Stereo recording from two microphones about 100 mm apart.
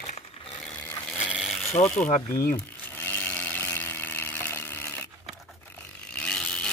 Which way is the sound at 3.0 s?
20° left (ahead or behind).